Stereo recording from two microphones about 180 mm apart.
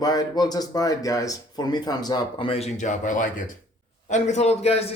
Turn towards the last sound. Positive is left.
turn(degrees=35)  # may be behind; listen again after turning